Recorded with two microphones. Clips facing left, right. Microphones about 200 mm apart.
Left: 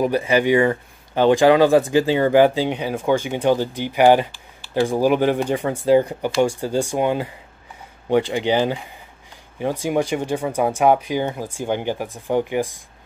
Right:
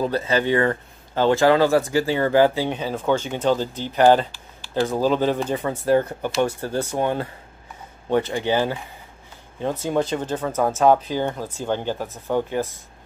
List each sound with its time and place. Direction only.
0.0 s speech: 15° left (ahead or behind)